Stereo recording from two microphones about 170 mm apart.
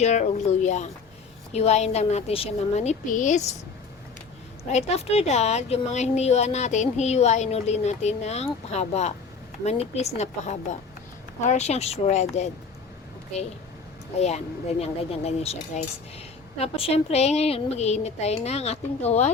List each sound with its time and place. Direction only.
0.0 s speech: 40° left (ahead or behind)
4.7 s speech: 40° left (ahead or behind)
14.2 s speech: 40° left (ahead or behind)